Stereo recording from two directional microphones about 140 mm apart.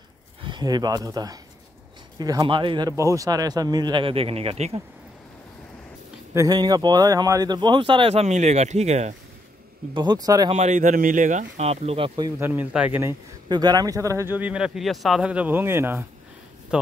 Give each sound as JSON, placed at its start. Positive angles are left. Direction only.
{"t": 0.4, "sound": "speech", "side_deg": -30}
{"t": 2.9, "sound": "speech", "side_deg": -25}
{"t": 6.3, "sound": "speech", "side_deg": -30}
{"t": 9.9, "sound": "speech", "side_deg": -30}
{"t": 10.5, "sound": "speech", "side_deg": -55}
{"t": 12.4, "sound": "speech", "side_deg": -15}
{"t": 13.5, "sound": "speech", "side_deg": -30}